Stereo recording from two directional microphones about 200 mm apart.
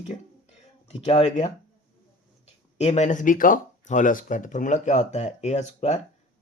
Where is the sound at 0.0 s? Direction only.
35° left (ahead or behind).